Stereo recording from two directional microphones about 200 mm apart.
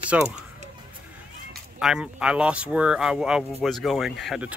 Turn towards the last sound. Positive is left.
turn(degrees=0)  # may be behind; listen again after turning